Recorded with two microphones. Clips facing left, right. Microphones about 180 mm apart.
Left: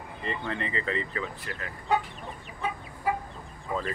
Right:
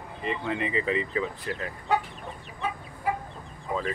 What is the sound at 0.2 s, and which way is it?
Speech, 5° right (ahead or behind).